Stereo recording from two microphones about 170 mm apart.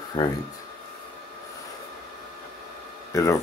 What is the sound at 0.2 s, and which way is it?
Speech, 30° left (ahead or behind).